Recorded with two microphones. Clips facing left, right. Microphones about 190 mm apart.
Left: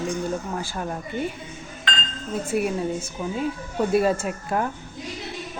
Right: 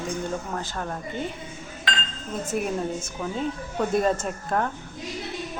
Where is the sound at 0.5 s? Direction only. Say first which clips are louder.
Left 2 dB; 10° left (ahead or behind).